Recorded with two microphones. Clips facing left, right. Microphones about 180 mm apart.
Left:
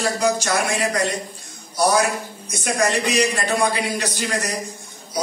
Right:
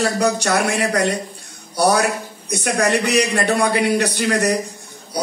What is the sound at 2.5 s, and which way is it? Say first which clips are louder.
A man's voice: right 3 dB; 65° right (ahead or behind).